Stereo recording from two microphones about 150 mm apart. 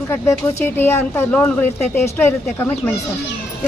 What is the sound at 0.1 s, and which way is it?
A woman's voice, 15° left (ahead or behind).